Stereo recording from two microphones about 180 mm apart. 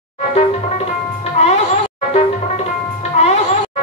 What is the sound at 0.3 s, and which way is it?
Music, 35° left (ahead or behind).